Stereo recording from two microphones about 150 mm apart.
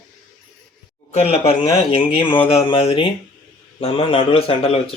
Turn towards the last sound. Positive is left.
turn(degrees=40)  # may be behind; listen again after turning